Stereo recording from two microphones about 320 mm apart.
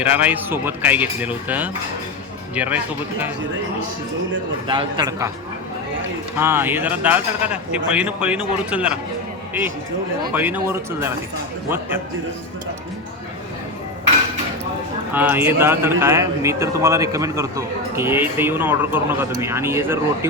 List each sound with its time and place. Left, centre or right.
0.0 s speech: centre
4.7 s a man's voice: centre
6.4 s speech: centre
10.3 s speech: centre
15.1 s a man's voice: centre